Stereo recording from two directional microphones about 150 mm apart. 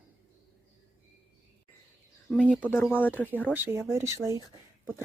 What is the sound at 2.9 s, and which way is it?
Speech, 10° left (ahead or behind).